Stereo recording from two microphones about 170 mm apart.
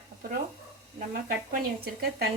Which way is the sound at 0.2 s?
55° right (ahead or behind).